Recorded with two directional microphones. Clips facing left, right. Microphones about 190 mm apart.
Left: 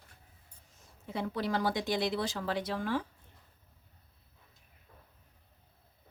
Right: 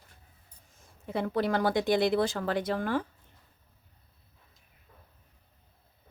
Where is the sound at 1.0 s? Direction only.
55° right (ahead or behind).